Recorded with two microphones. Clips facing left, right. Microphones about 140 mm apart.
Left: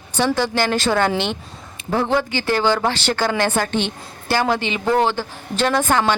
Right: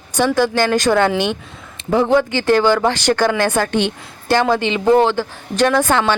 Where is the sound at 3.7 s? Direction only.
15° right (ahead or behind).